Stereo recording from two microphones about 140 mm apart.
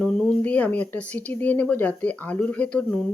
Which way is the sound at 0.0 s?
5° left (ahead or behind).